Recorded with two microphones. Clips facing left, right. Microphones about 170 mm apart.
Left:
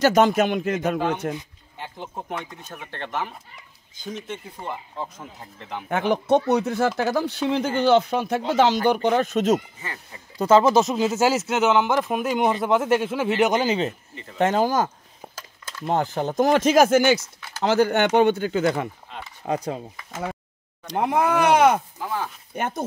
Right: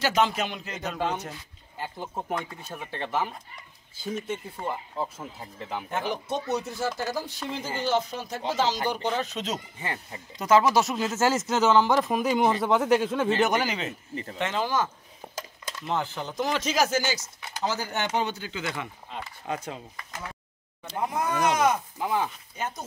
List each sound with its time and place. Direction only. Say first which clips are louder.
0.0 s speech: left 7 dB; 45° left (ahead or behind)
1.8 s speech: even; 5° right (ahead or behind)
5.9 s speech: left 11 dB; 65° left (ahead or behind); by 9.6 s 50° left (ahead or behind)
10.4 s speech: left 4 dB; 25° left (ahead or behind)
14.4 s speech: left 7 dB; 45° left (ahead or behind)
15.2 s a sound: right 2 dB; centre (ahead or behind)
15.8 s speech: left 7 dB; 45° left (ahead or behind)
19.4 s speech: left 8 dB; 35° left (ahead or behind)
20.9 s speech: left 7 dB; 75° left (ahead or behind)
22.0 s speech: right 1 dB; 10° right (ahead or behind)
22.6 s speech: left 7 dB; 60° left (ahead or behind)